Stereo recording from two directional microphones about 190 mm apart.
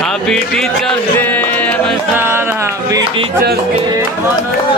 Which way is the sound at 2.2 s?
10° right (ahead or behind).